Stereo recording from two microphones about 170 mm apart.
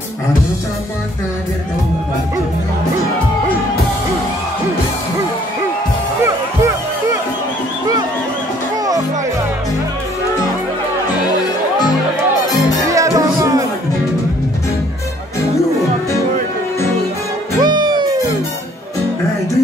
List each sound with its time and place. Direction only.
6.2 s music: 15° right (ahead or behind)
12.8 s music: 20° right (ahead or behind)
17.6 s music: 25° right (ahead or behind)